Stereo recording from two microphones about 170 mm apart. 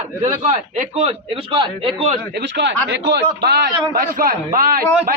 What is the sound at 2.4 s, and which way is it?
A man's voice, 85° right.